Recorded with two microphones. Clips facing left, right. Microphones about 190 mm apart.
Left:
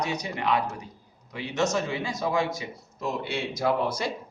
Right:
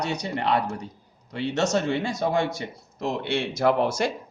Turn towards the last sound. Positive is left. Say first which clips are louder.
# right 4 dB
turn(degrees=-75)  # may be behind; listen again after turning